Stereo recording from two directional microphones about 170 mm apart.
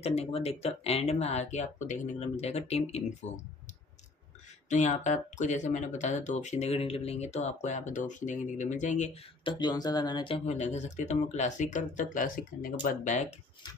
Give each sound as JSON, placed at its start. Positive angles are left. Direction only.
{"t": 0.0, "sound": "speech", "side_deg": 35}
{"t": 4.6, "sound": "speech", "side_deg": 45}
{"t": 9.4, "sound": "speech", "side_deg": 25}